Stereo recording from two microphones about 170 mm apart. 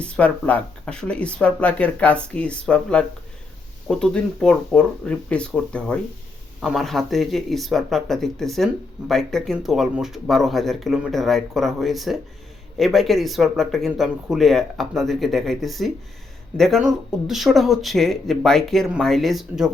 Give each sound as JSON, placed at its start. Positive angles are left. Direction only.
{"t": 0.0, "sound": "speech", "side_deg": 5}